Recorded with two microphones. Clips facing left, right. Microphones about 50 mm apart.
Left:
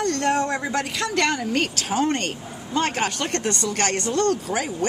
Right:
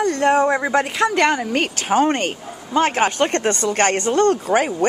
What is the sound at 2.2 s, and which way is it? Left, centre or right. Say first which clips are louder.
A woman's voice: right 5 dB; centre.